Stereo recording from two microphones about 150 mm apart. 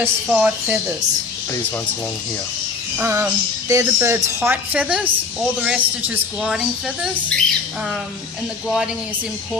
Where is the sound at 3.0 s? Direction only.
15° right (ahead or behind).